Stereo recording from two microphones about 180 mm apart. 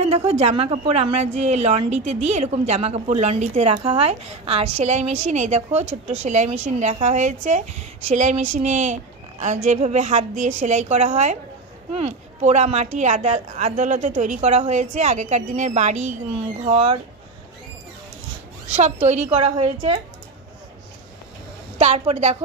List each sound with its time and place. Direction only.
0.0 s a woman's voice: 35° right (ahead or behind)
18.8 s a woman's voice: 40° right (ahead or behind)
19.3 s a woman's voice: 30° right (ahead or behind)
21.7 s a woman's voice: 35° right (ahead or behind)